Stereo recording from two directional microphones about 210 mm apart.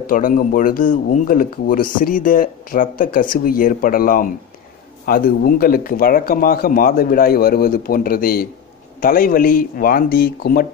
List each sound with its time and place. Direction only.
0.0 s speech: 40° left (ahead or behind)